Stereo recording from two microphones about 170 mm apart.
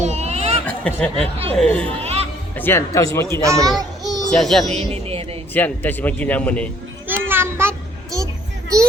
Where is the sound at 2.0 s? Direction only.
35° right (ahead or behind).